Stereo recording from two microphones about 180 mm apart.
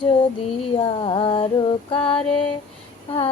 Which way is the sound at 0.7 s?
25° left (ahead or behind).